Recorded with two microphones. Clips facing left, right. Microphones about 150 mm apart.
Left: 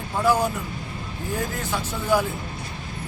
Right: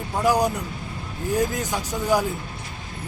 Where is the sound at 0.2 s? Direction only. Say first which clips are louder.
Right 1 dB; 15° right (ahead or behind).